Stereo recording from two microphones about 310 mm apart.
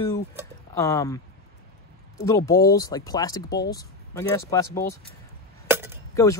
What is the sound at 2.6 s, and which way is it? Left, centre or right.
Speech, centre.